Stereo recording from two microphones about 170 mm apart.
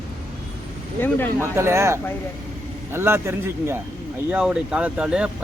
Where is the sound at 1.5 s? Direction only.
15° right (ahead or behind).